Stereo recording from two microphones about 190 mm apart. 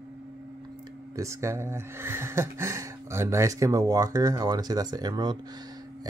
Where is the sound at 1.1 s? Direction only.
15° right (ahead or behind).